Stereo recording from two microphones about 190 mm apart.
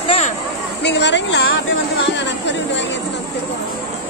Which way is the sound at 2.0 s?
70° left (ahead or behind).